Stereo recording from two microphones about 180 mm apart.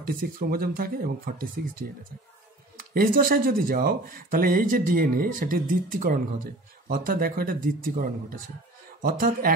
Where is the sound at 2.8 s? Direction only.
55° right (ahead or behind).